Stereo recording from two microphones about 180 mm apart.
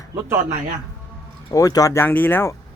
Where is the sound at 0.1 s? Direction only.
15° right (ahead or behind).